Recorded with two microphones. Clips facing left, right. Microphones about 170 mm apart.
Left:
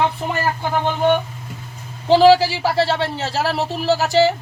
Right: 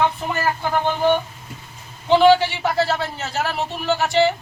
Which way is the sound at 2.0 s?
35° left (ahead or behind).